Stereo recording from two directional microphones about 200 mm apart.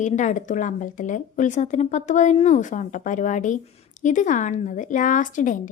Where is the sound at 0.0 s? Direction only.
40° left (ahead or behind).